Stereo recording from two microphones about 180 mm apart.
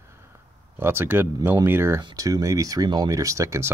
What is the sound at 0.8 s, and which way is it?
Speech, 10° right (ahead or behind).